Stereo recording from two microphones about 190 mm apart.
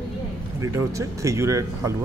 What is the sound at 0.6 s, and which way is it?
Speech, 15° right (ahead or behind).